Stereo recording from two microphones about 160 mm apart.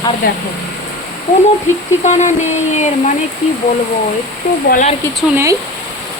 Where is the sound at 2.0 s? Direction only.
45° left (ahead or behind).